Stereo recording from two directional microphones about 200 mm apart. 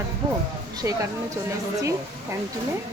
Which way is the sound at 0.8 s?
15° right (ahead or behind).